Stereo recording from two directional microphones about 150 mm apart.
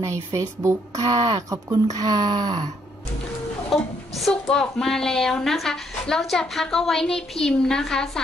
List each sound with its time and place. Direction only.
0.0 s speech: 20° right (ahead or behind)
3.7 s a woman's voice: centre (ahead or behind)